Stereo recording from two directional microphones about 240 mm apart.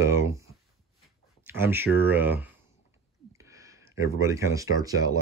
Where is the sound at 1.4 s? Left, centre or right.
Centre.